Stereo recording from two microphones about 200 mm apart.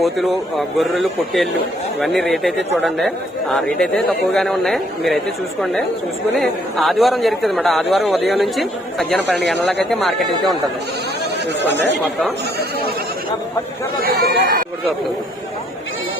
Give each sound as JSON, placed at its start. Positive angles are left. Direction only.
{"t": 0.0, "sound": "a man's voice", "side_deg": 0}
{"t": 3.5, "sound": "a man's voice", "side_deg": 0}
{"t": 6.4, "sound": "a man's voice", "side_deg": 0}
{"t": 14.0, "sound": "speech", "side_deg": -50}